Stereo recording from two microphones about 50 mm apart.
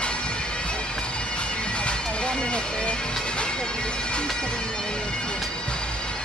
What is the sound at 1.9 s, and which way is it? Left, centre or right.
Bagpipes, left.